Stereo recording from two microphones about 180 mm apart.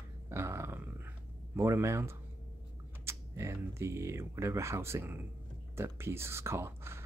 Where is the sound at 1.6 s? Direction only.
15° right (ahead or behind).